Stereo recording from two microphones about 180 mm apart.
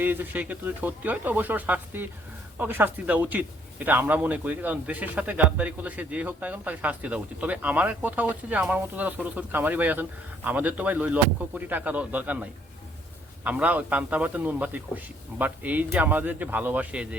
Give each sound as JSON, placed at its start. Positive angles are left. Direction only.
{"t": 0.0, "sound": "a man's voice", "side_deg": -10}